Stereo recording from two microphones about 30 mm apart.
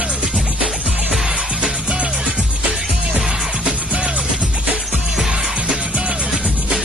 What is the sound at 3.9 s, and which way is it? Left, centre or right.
Music, right.